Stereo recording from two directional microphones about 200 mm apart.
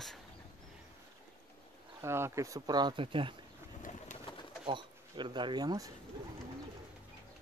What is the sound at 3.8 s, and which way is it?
Bird, 35° left (ahead or behind).